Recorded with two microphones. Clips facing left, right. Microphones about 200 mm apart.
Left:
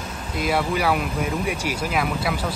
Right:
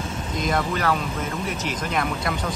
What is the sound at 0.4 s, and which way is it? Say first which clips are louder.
Speech: left 2 dB; 10° left (ahead or behind).